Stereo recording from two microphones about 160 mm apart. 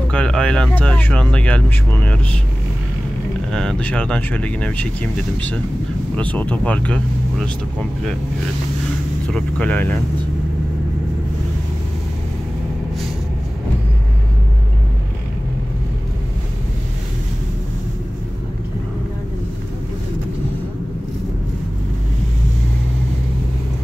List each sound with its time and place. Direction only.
0.1 s speech: 5° left (ahead or behind)
3.5 s speech: 5° left (ahead or behind)
9.3 s speech: 10° left (ahead or behind)